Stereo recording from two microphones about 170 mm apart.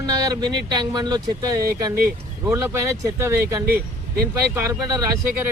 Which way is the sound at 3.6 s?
65° right (ahead or behind).